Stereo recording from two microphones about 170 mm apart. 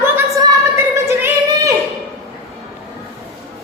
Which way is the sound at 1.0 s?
15° right (ahead or behind).